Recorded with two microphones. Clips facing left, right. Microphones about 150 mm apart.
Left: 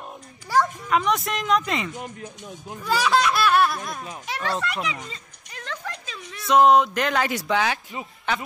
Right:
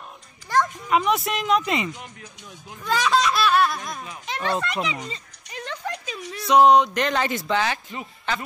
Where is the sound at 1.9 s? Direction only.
45° left (ahead or behind).